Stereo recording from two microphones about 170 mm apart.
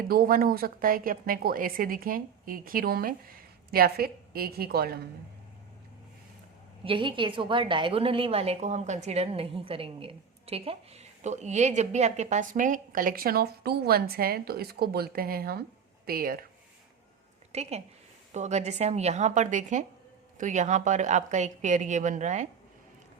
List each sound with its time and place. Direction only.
0.0 s a woman's voice: 60° right (ahead or behind)
6.8 s a woman's voice: 30° right (ahead or behind); by 16.4 s 60° right (ahead or behind)
17.5 s a woman's voice: 40° right (ahead or behind)